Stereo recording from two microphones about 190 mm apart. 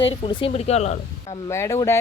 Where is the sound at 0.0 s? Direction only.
25° left (ahead or behind).